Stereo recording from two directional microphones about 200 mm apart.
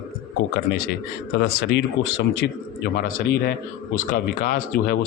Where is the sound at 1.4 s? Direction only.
60° left (ahead or behind).